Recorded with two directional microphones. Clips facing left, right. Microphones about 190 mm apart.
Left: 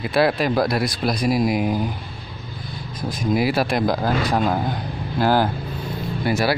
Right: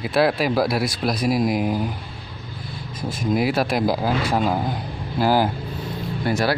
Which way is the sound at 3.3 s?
Centre (ahead or behind).